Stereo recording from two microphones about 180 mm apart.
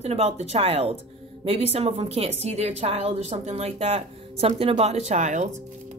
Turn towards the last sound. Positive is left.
turn(degrees=-40)  # may be behind; listen again after turning